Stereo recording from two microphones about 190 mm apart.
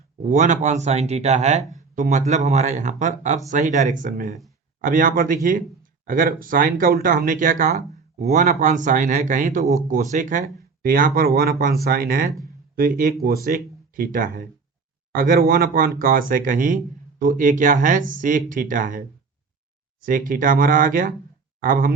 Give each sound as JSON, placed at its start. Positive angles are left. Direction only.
{"t": 0.2, "sound": "speech", "side_deg": -40}
{"t": 8.3, "sound": "speech", "side_deg": -40}